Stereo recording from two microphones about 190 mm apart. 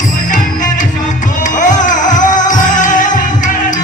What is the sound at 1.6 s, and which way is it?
Music, 40° left (ahead or behind).